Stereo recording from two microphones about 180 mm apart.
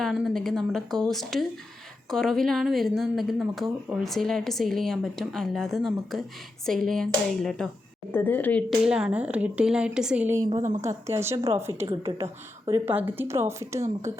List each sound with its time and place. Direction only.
0.0 s speech: centre (ahead or behind)
8.8 s a woman's voice: 5° right (ahead or behind)